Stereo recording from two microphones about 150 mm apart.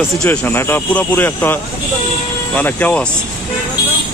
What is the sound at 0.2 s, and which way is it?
Speech, 10° left (ahead or behind).